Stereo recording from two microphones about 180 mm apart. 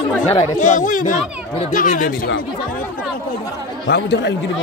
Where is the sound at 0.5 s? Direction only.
45° left (ahead or behind).